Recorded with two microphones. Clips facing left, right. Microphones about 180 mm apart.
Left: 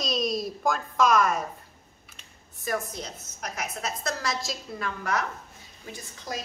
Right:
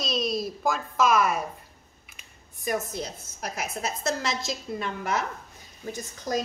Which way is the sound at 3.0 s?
30° right (ahead or behind).